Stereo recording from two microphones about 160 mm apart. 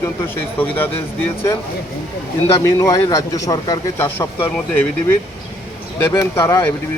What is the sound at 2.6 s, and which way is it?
A man's voice, 20° left (ahead or behind).